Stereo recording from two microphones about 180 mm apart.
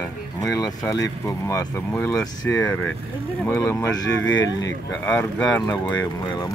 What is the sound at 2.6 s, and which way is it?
Speech, 5° left (ahead or behind).